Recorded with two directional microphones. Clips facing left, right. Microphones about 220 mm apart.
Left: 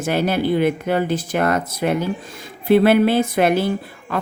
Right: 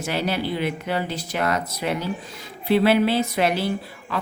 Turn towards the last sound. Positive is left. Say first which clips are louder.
# left 4 dB
turn(degrees=50)  # may be behind; listen again after turning